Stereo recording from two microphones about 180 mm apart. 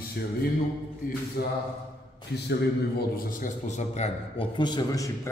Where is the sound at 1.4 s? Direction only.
65° left (ahead or behind).